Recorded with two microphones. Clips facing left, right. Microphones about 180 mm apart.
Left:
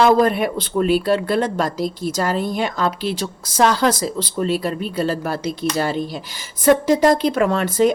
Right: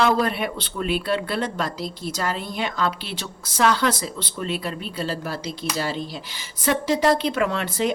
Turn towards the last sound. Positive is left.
turn(degrees=45)  # may be behind; listen again after turning